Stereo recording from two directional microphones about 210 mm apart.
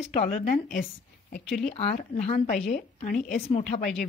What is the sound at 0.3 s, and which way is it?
A woman's voice, 40° left (ahead or behind).